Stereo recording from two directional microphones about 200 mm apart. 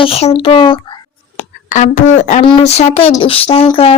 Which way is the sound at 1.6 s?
40° left (ahead or behind).